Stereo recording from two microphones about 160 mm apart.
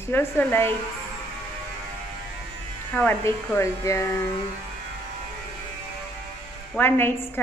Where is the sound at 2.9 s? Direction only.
5° left (ahead or behind).